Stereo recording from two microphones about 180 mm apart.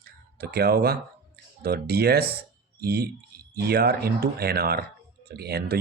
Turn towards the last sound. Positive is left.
turn(degrees=-60)  # may be behind; listen again after turning